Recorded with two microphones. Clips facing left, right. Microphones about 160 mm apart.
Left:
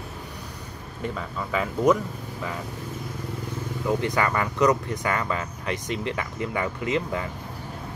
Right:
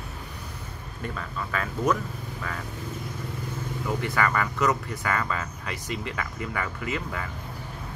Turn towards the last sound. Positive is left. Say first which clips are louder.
# left 5 dB
turn(degrees=20)  # may be behind; listen again after turning